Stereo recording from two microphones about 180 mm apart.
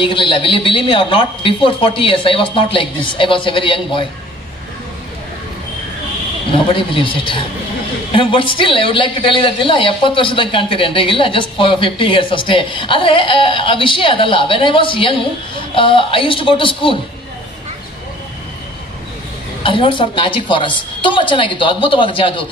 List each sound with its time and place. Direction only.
0.0 s a woman's voice: 30° left (ahead or behind)
6.7 s a woman's voice: 30° left (ahead or behind)
19.6 s a woman's voice: 30° left (ahead or behind)